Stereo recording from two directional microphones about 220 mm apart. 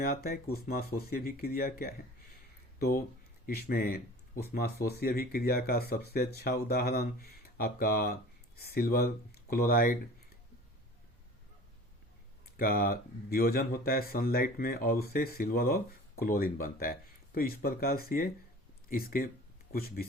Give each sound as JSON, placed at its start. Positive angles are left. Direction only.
{"t": 0.0, "sound": "speech", "side_deg": 40}
{"t": 12.5, "sound": "speech", "side_deg": 45}